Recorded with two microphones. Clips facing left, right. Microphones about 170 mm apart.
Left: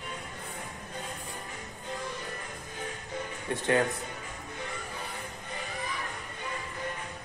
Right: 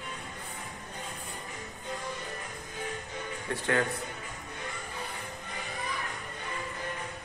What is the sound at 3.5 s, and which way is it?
Speech, 20° left (ahead or behind).